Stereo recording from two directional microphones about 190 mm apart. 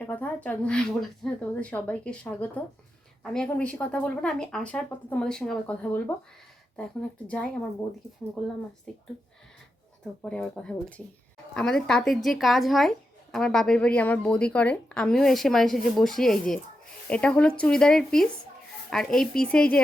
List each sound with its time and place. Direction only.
0.0 s a woman's voice: 10° left (ahead or behind)
7.3 s a woman's voice: 5° left (ahead or behind)
8.9 s a woman's voice: 5° left (ahead or behind)
10.2 s a woman's voice: 5° left (ahead or behind)